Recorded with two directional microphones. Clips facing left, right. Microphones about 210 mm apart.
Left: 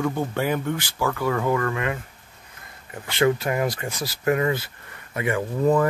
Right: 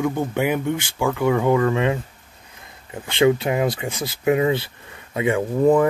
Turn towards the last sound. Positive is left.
turn(degrees=-15)  # may be behind; listen again after turning